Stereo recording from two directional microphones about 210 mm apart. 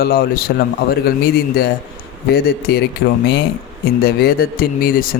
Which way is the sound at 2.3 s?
50° left (ahead or behind).